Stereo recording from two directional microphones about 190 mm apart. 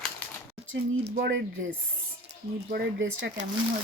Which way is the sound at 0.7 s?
70° right (ahead or behind).